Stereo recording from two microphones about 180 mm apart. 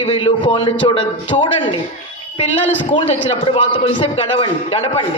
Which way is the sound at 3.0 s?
25° left (ahead or behind).